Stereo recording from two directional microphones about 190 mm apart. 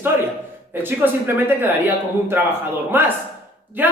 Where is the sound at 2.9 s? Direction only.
10° right (ahead or behind).